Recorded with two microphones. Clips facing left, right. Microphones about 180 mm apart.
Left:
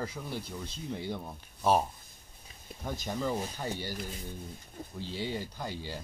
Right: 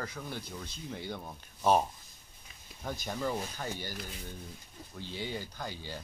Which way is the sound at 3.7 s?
30° left (ahead or behind).